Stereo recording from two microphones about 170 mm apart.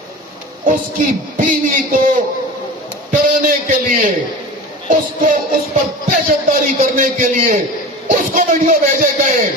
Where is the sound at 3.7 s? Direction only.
55° right (ahead or behind).